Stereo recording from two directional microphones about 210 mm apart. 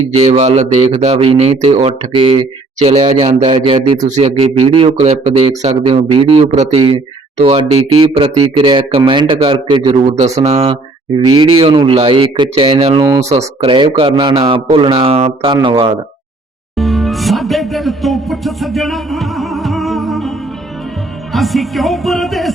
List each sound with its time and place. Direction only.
0.1 s a man's voice: 30° right (ahead or behind)
3.4 s a man's voice: 20° right (ahead or behind)
13.3 s a man's voice: 25° right (ahead or behind)
16.7 s music: centre (ahead or behind)
21.3 s music: centre (ahead or behind)